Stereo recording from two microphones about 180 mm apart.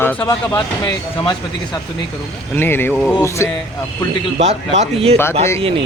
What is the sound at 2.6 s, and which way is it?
Speech, 10° left (ahead or behind).